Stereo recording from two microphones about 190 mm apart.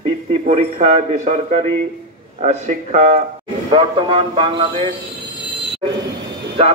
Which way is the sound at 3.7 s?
25° right (ahead or behind).